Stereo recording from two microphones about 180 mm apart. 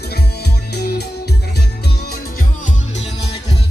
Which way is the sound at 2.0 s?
55° left (ahead or behind).